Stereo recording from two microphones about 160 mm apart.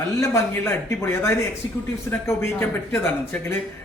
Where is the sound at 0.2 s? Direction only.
15° left (ahead or behind).